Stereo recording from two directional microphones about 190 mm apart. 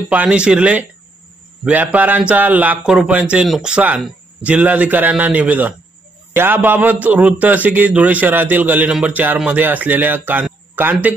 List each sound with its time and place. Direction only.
0.1 s a man's voice: 5° right (ahead or behind)